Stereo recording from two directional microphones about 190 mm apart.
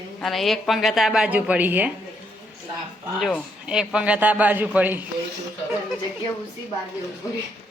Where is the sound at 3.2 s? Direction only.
Centre (ahead or behind).